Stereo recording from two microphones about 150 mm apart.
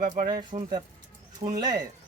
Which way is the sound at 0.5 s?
40° right (ahead or behind).